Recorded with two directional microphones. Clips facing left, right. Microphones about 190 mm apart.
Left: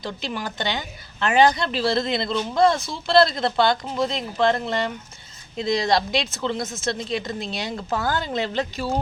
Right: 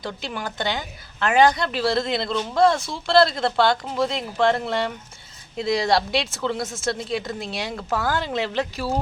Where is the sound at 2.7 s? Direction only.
20° left (ahead or behind).